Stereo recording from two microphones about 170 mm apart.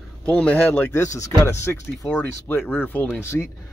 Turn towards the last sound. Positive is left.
turn(degrees=15)  # may be behind; listen again after turning